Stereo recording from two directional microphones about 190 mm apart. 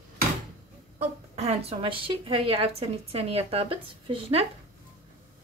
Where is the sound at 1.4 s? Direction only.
35° right (ahead or behind).